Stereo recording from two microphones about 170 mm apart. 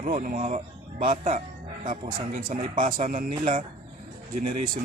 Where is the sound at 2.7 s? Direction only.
45° right (ahead or behind).